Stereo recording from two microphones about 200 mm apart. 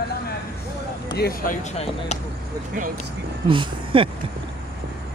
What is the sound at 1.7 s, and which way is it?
Speech, 35° left (ahead or behind).